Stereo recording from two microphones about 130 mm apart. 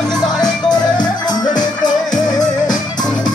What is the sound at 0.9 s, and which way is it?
Music, 35° left (ahead or behind).